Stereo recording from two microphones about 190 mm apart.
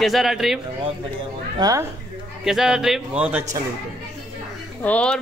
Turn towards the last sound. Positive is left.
turn(degrees=5)  # may be behind; listen again after turning